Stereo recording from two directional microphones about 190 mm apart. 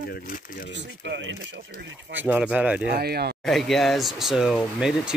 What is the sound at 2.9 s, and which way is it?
Speech, 55° right (ahead or behind).